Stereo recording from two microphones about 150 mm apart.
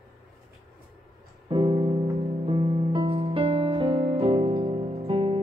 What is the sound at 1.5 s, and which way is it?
Music, 35° right (ahead or behind).